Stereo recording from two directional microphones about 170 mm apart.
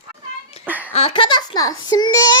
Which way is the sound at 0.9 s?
35° left (ahead or behind).